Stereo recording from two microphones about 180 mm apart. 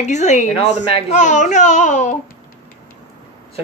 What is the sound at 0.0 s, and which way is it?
A child's voice, 40° left (ahead or behind).